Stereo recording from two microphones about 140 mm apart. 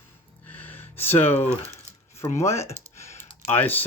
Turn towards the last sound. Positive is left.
turn(degrees=15)  # may be behind; listen again after turning